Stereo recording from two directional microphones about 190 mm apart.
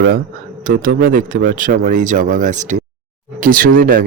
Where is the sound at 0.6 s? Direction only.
45° right (ahead or behind).